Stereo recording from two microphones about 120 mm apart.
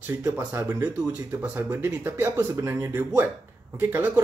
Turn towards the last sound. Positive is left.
turn(degrees=-20)  # may be behind; listen again after turning